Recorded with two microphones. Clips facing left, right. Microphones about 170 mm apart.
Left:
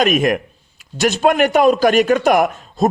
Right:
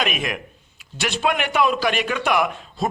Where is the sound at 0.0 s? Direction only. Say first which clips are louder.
Left 10 dB; 45° left (ahead or behind).